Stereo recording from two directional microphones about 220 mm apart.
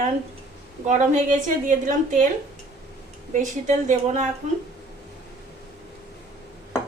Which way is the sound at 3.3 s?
35° right (ahead or behind).